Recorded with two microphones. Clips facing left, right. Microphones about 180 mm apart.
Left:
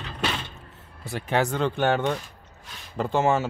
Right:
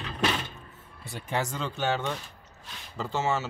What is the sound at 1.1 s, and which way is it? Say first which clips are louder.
Speech: left 7 dB; 65° left (ahead or behind).